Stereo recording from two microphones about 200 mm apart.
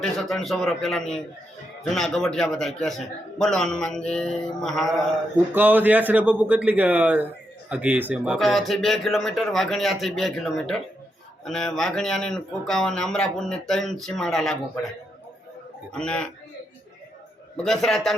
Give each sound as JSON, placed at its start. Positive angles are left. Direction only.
{"t": 0.0, "sound": "speech", "side_deg": 0}
{"t": 5.5, "sound": "a man's voice", "side_deg": -10}
{"t": 15.9, "sound": "speech", "side_deg": 5}
{"t": 17.6, "sound": "speech", "side_deg": 0}